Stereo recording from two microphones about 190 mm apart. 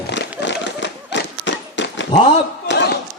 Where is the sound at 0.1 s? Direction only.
70° left (ahead or behind).